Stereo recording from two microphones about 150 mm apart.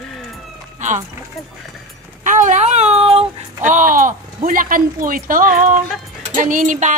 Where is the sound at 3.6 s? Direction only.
60° right (ahead or behind).